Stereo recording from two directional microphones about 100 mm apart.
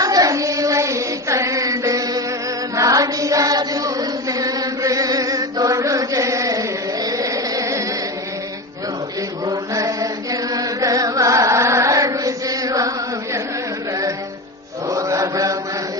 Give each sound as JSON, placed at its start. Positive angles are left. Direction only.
{"t": 0.0, "sound": "child singing", "side_deg": -35}
{"t": 2.7, "sound": "chant", "side_deg": -35}
{"t": 9.5, "sound": "chant", "side_deg": -35}
{"t": 10.5, "sound": "carnatic music", "side_deg": -35}
{"t": 14.8, "sound": "chant", "side_deg": -35}